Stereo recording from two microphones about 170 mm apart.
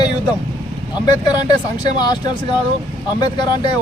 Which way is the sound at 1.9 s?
25° left (ahead or behind).